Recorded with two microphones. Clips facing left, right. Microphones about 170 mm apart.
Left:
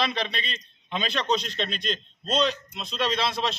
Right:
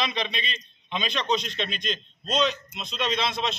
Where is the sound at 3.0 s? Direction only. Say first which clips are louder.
Left 1 dB; 35° left (ahead or behind).